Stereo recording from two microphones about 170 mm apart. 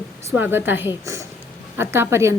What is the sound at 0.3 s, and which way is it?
A woman's voice, 10° right (ahead or behind).